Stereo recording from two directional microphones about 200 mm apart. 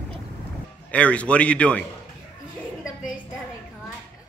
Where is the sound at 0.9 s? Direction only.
5° left (ahead or behind).